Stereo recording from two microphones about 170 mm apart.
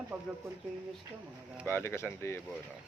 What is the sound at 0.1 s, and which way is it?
Speech, 5° right (ahead or behind).